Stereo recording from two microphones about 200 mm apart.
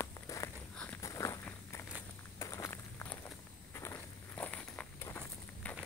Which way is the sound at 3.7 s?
15° left (ahead or behind).